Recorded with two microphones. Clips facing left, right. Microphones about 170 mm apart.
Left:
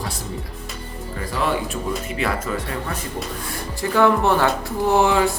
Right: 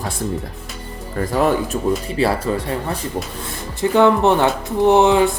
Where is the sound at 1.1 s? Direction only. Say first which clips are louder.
Right 6 dB; 45° right (ahead or behind).